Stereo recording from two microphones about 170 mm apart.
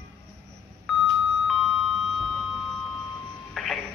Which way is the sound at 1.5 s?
Centre (ahead or behind).